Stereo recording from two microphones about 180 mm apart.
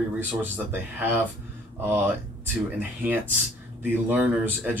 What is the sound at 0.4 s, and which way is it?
Speech, 10° right (ahead or behind).